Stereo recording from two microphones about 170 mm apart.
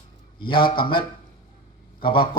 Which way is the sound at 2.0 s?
30° left (ahead or behind).